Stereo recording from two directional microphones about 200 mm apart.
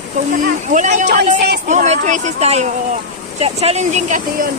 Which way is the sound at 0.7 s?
40° right (ahead or behind).